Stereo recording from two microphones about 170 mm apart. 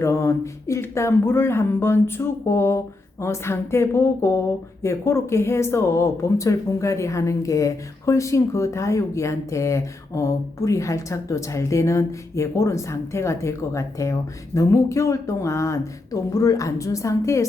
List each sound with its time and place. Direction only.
0.0 s speech: 15° left (ahead or behind)